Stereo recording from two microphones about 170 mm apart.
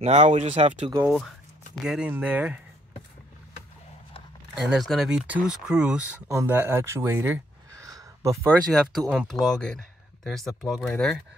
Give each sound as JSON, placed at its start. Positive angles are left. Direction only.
{"t": 0.0, "sound": "speech", "side_deg": -40}
{"t": 1.0, "sound": "speech", "side_deg": 0}
{"t": 4.6, "sound": "speech", "side_deg": 0}
{"t": 9.1, "sound": "speech", "side_deg": 0}